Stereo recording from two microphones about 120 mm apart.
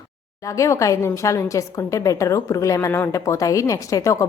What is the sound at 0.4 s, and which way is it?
A woman's voice, 25° left (ahead or behind).